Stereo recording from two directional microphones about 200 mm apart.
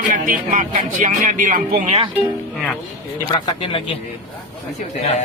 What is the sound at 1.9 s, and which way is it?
Speech, 30° right (ahead or behind).